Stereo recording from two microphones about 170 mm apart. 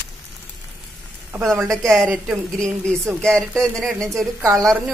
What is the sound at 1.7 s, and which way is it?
Speech, centre (ahead or behind).